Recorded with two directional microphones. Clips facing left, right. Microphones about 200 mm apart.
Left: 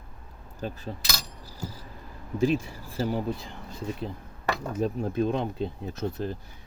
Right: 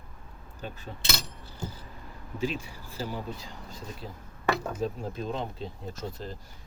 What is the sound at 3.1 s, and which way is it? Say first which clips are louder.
Speech: left 7 dB; 55° left (ahead or behind).